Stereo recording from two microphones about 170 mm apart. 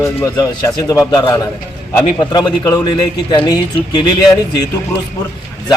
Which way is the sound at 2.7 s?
25° left (ahead or behind).